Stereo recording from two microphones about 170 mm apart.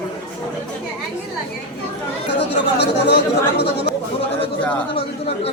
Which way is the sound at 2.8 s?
80° left.